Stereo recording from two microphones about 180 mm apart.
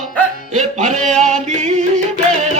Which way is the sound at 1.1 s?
40° right (ahead or behind).